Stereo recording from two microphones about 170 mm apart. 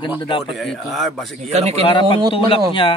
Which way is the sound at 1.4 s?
40° right (ahead or behind).